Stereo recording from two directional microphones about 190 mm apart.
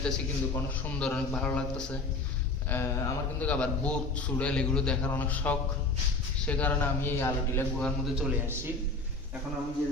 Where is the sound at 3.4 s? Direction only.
5° left (ahead or behind).